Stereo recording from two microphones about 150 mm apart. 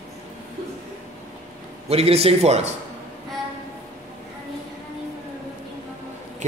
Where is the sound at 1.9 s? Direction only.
40° right (ahead or behind).